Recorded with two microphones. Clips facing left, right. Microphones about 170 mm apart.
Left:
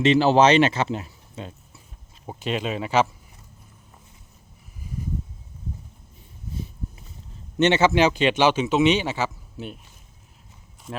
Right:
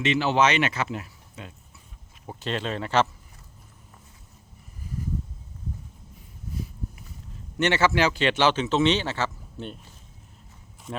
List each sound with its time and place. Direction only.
0.0 s speech: 35° left (ahead or behind)
2.2 s a man's voice: 15° left (ahead or behind)
7.6 s a man's voice: 20° left (ahead or behind)